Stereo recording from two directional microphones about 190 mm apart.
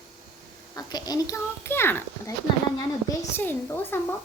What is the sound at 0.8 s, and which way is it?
A child's voice, 20° left (ahead or behind).